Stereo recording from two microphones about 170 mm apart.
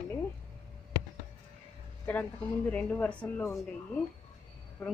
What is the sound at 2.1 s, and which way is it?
A woman's voice, 10° left (ahead or behind).